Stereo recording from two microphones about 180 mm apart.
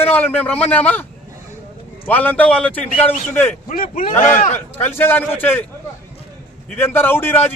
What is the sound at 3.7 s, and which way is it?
Speech, 50° left (ahead or behind).